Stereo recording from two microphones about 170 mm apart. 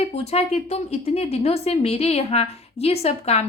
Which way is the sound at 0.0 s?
35° left (ahead or behind).